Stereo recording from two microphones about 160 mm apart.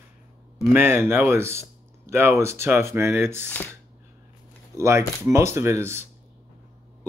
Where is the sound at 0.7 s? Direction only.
15° right (ahead or behind).